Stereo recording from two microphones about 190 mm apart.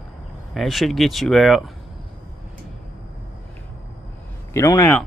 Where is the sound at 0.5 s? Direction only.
Centre (ahead or behind).